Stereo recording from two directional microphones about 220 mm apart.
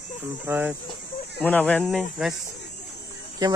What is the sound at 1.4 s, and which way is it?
Speech, 5° left (ahead or behind).